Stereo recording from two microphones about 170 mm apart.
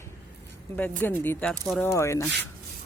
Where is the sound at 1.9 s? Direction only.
15° left (ahead or behind).